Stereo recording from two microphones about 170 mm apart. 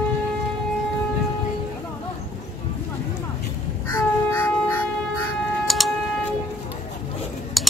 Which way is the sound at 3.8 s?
15° left (ahead or behind).